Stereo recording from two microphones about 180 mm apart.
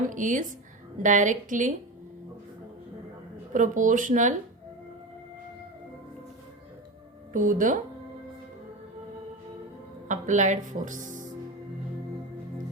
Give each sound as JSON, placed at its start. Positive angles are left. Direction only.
{"t": 0.1, "sound": "speech", "side_deg": -45}
{"t": 3.5, "sound": "speech", "side_deg": -45}
{"t": 7.3, "sound": "speech", "side_deg": -45}
{"t": 10.1, "sound": "a woman's voice", "side_deg": -45}